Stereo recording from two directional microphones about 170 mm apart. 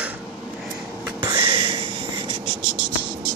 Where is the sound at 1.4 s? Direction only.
30° right (ahead or behind).